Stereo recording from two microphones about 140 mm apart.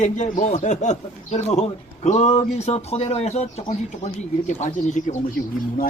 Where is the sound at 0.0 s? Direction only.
60° left (ahead or behind).